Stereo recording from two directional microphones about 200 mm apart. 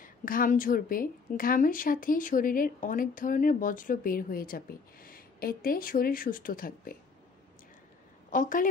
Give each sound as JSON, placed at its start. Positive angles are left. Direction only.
{"t": 0.0, "sound": "a woman's voice", "side_deg": 45}
{"t": 8.3, "sound": "a woman's voice", "side_deg": 40}